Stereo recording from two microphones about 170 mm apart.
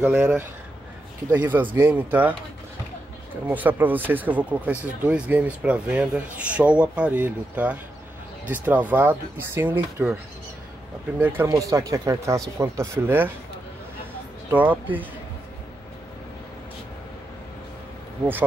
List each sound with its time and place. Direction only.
0.0 s speech: 5° right (ahead or behind)
3.4 s speech: 10° right (ahead or behind)
11.1 s speech: 10° right (ahead or behind)
14.5 s speech: 10° right (ahead or behind)